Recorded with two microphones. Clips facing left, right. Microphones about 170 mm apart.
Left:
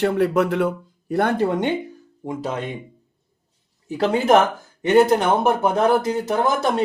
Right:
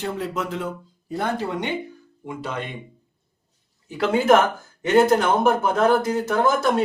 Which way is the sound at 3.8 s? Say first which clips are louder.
Left 2 dB; 40° left (ahead or behind).